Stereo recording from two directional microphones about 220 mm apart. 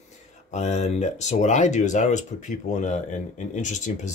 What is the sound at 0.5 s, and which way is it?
Speech, 30° left (ahead or behind).